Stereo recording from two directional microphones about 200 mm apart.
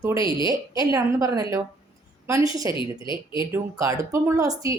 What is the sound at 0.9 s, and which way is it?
Speech, 15° right (ahead or behind).